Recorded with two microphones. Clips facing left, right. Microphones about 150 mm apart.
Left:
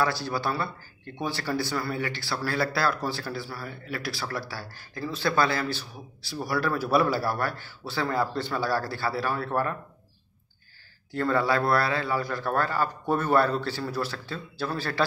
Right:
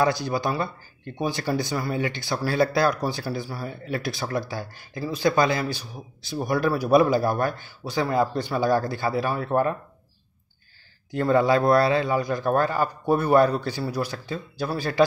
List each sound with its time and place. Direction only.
0.0 s speech: 15° right (ahead or behind)
11.1 s speech: 15° right (ahead or behind)